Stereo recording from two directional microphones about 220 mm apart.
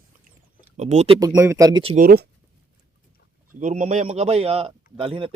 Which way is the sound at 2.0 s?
45° right (ahead or behind).